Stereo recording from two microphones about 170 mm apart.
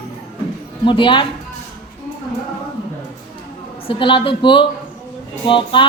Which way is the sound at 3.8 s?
30° left (ahead or behind).